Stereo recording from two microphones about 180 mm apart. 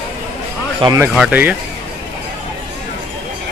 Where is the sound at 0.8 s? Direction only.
25° right (ahead or behind).